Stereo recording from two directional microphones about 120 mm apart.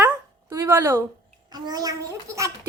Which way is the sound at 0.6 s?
20° right (ahead or behind).